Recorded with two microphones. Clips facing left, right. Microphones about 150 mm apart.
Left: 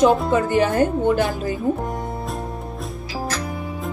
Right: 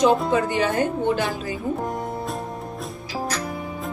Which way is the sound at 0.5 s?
50° left (ahead or behind).